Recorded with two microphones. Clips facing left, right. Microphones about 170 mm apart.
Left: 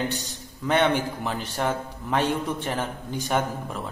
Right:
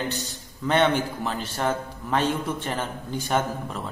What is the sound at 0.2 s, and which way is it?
A man's voice, 10° left (ahead or behind).